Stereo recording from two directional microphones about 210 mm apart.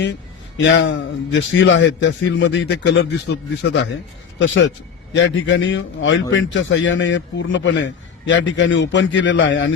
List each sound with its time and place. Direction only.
0.0 s a man's voice: 60° left (ahead or behind)